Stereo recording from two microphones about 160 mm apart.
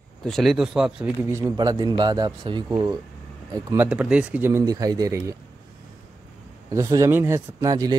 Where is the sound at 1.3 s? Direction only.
20° right (ahead or behind).